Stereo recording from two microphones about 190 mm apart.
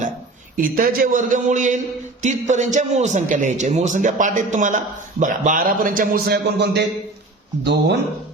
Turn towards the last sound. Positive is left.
turn(degrees=-60)  # may be behind; listen again after turning